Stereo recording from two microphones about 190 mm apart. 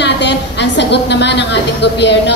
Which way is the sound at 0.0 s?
65° left (ahead or behind).